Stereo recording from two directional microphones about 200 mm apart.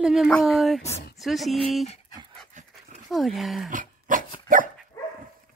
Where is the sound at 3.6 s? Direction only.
40° right (ahead or behind).